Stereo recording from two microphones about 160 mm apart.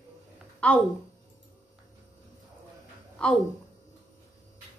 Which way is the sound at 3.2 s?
5° left (ahead or behind).